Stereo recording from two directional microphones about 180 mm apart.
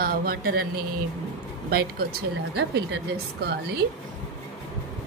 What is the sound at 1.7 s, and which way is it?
A woman's voice, 55° right (ahead or behind).